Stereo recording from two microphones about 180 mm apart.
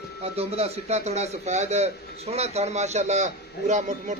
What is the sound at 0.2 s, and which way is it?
A man's voice, 35° right (ahead or behind).